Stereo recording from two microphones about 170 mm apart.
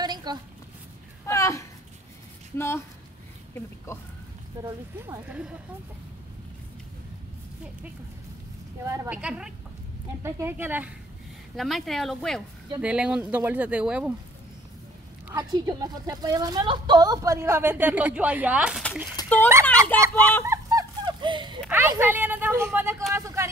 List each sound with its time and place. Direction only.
0.0 s a sound: 25° right (ahead or behind)
1.2 s a sound: 15° left (ahead or behind)
2.5 s speech: 15° left (ahead or behind)
4.6 s speech: 15° right (ahead or behind)
8.8 s a woman's voice: 20° right (ahead or behind)
9.1 s speech: 5° right (ahead or behind)
11.5 s speech: centre (ahead or behind)
15.3 s a woman's voice: 25° right (ahead or behind); by 18.8 s 10° right (ahead or behind)
19.2 s speech: 10° left (ahead or behind)
20.4 s a sound: 20° right (ahead or behind)
21.6 s speech: 15° right (ahead or behind)
23.1 s a sound: 15° right (ahead or behind)